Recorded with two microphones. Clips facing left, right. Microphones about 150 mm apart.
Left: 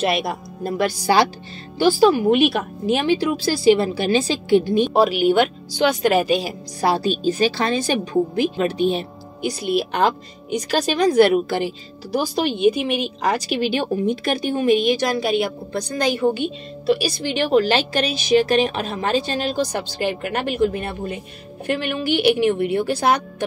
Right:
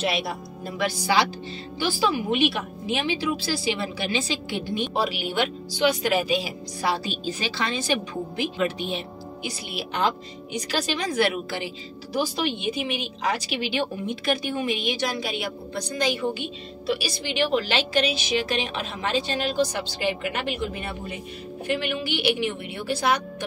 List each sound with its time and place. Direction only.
0.0 s a woman's voice: 50° left (ahead or behind)